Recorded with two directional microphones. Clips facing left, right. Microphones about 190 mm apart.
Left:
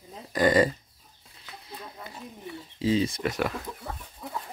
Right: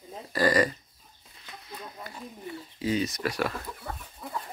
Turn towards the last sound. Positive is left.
turn(degrees=20)  # may be behind; listen again after turning